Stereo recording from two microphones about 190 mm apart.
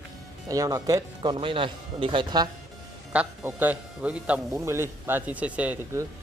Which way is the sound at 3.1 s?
5° right (ahead or behind).